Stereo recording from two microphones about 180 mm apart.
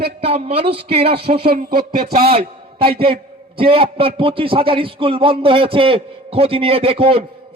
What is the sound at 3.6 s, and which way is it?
A man's voice, 30° right (ahead or behind).